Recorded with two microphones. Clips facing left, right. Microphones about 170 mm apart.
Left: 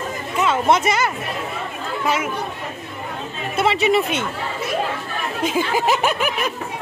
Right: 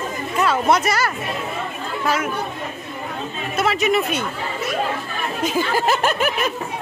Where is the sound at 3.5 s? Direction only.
30° left (ahead or behind).